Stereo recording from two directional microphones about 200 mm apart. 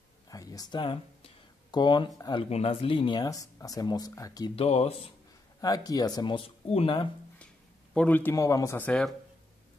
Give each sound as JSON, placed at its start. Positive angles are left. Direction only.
{"t": 0.3, "sound": "a sound", "side_deg": 15}
{"t": 2.5, "sound": "speech", "side_deg": 30}
{"t": 4.6, "sound": "speech", "side_deg": 30}
{"t": 5.6, "sound": "speech", "side_deg": 20}
{"t": 7.9, "sound": "speech", "side_deg": 5}